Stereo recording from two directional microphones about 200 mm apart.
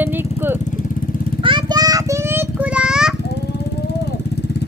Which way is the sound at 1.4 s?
20° right (ahead or behind).